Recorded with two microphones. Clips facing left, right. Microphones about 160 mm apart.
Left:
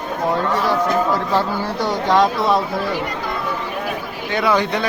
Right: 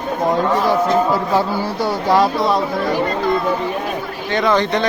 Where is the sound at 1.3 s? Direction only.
10° right (ahead or behind).